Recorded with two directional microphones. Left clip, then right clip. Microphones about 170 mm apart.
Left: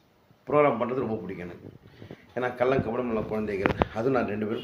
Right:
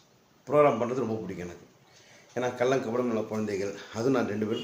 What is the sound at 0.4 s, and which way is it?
Speech, 15° right (ahead or behind).